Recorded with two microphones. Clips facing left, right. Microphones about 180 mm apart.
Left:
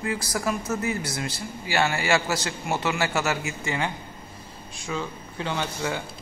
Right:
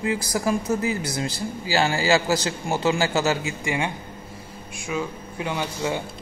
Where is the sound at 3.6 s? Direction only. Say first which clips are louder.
Right 2 dB; 15° right (ahead or behind).